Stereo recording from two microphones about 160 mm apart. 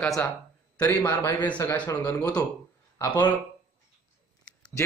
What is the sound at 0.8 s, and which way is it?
Speech, 15° left (ahead or behind).